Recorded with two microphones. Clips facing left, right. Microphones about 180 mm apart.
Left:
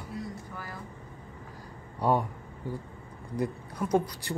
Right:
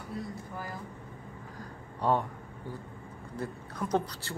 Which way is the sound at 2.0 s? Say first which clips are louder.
Left 2 dB; 10° left (ahead or behind).